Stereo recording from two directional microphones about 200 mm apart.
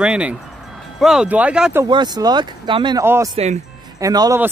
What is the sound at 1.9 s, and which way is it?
Speech, 20° right (ahead or behind).